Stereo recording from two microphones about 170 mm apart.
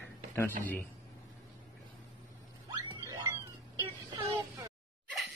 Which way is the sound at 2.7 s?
25° right (ahead or behind).